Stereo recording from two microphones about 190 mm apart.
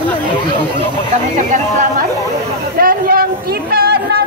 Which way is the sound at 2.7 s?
50° right (ahead or behind).